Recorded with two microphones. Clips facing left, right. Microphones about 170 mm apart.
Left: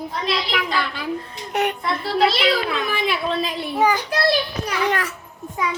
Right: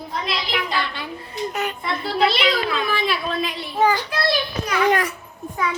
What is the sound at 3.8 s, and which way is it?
Speech, 15° left (ahead or behind).